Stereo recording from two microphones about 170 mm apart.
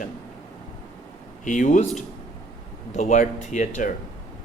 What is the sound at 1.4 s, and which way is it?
Speech, 50° left (ahead or behind).